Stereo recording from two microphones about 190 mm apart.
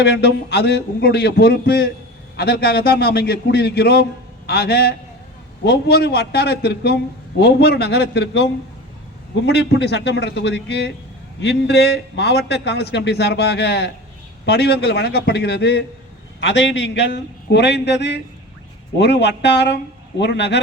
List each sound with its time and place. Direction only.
0.0 s a man's voice: 65° left (ahead or behind)
16.4 s a man's voice: 70° left (ahead or behind)